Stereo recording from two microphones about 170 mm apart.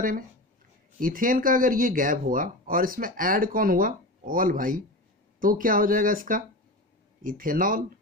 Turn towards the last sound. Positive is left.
turn(degrees=-55)  # may be behind; listen again after turning